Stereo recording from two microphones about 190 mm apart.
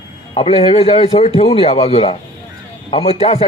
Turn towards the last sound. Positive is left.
turn(degrees=30)  # may be behind; listen again after turning